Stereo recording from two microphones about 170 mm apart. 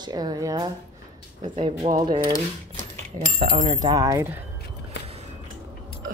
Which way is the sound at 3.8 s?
20° right (ahead or behind).